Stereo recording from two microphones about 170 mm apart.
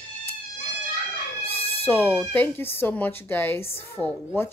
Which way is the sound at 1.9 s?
10° left (ahead or behind).